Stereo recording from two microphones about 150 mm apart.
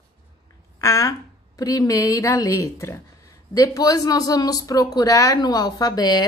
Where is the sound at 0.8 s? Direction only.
20° left (ahead or behind).